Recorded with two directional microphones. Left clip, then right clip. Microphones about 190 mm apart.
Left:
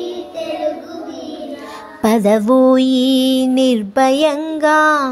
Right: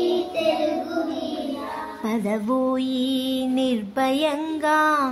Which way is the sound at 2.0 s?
45° left (ahead or behind).